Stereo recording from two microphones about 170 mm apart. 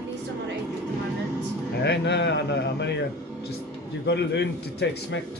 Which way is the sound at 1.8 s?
90° left.